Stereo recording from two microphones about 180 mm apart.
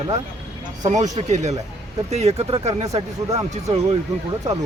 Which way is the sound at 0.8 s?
40° right (ahead or behind).